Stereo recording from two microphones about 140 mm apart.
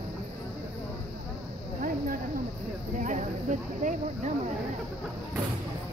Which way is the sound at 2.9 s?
65° right (ahead or behind).